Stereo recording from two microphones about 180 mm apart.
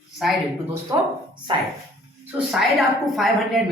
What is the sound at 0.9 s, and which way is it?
Speech, 20° right (ahead or behind).